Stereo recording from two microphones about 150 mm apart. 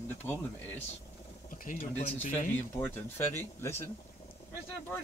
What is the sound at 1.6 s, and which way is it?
Speech, 50° left (ahead or behind).